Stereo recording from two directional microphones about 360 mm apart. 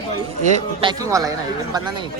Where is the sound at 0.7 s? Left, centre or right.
Centre.